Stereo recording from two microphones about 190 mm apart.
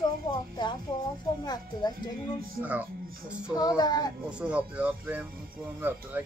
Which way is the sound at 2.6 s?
10° right (ahead or behind).